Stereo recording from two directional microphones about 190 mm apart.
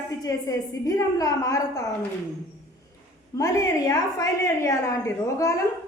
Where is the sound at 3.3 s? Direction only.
15° left (ahead or behind).